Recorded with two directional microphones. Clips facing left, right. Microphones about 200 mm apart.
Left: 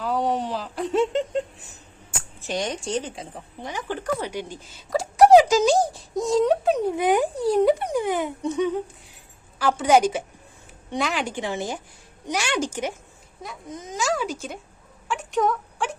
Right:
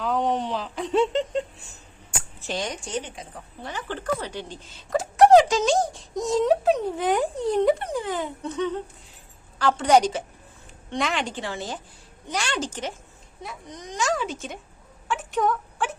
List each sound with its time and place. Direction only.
0.0 s speech: 5° left (ahead or behind)
2.5 s speech: 20° left (ahead or behind)
2.8 s speech: 30° left (ahead or behind)
3.6 s speech: 15° left (ahead or behind)
4.9 s a sound: centre (ahead or behind)
5.3 s music: 10° left (ahead or behind)
6.1 s speech: centre (ahead or behind)
6.8 s speech: 10° left (ahead or behind)
15.0 s a sound: centre (ahead or behind)